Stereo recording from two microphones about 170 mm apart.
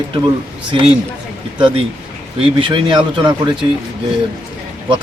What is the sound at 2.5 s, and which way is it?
Speech, 30° right (ahead or behind).